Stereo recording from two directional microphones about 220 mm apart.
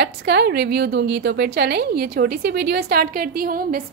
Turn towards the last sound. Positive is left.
turn(degrees=-40)  # may be behind; listen again after turning